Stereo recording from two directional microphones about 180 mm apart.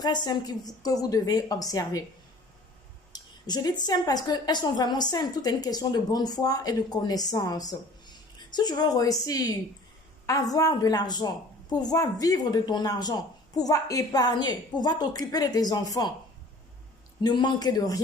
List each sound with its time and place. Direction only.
0.0 s a woman's voice: 20° left (ahead or behind)
3.1 s a woman's voice: 20° left (ahead or behind)
17.2 s a woman's voice: 25° left (ahead or behind)